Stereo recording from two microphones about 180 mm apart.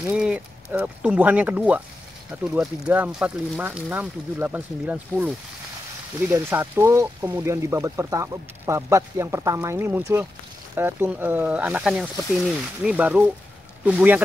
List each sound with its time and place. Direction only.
0.0 s speech: 5° right (ahead or behind)